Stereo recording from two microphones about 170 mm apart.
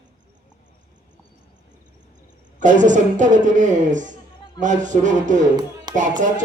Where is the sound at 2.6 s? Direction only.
45° right (ahead or behind).